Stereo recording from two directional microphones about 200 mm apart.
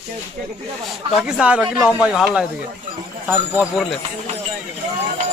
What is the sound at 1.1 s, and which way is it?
Speech, 5° right (ahead or behind).